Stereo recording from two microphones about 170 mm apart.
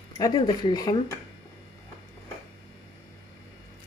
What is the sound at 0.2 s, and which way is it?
Speech, 25° left (ahead or behind).